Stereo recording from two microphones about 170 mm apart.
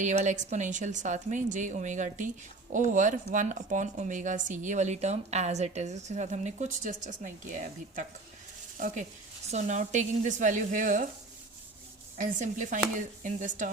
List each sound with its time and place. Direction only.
0.0 s speech: 45° right (ahead or behind)
9.5 s speech: 45° right (ahead or behind)
12.1 s speech: 50° right (ahead or behind)